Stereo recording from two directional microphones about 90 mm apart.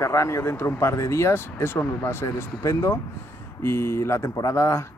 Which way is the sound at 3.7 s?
30° left (ahead or behind).